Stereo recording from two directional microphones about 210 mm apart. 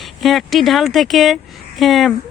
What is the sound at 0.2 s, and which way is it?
Speech, centre (ahead or behind).